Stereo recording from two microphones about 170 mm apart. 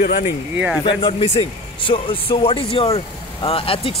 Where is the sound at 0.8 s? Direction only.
35° left (ahead or behind).